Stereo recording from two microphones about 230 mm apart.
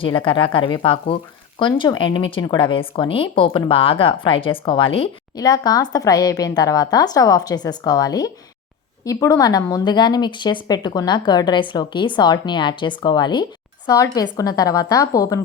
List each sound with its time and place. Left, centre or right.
0.0 s a woman's voice: left